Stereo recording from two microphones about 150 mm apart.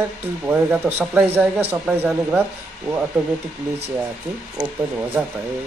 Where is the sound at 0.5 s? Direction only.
15° right (ahead or behind).